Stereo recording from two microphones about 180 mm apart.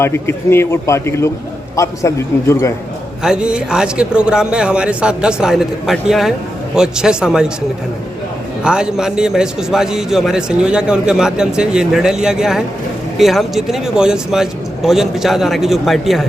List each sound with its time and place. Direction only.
0.0 s a man's voice: 15° left (ahead or behind)
3.2 s a man's voice: 5° right (ahead or behind)
8.6 s a man's voice: 5° right (ahead or behind)